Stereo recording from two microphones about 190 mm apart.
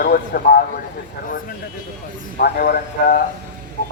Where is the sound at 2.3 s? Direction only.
55° left (ahead or behind).